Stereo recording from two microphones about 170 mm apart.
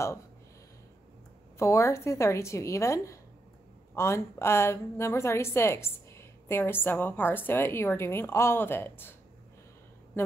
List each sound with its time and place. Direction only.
1.6 s a woman's voice: 15° left (ahead or behind)
10.1 s speech: 15° left (ahead or behind)